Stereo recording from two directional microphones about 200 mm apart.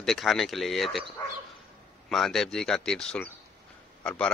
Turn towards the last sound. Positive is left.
turn(degrees=5)  # may be behind; listen again after turning